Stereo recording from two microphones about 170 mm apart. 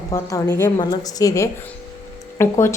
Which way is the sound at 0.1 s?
20° left (ahead or behind).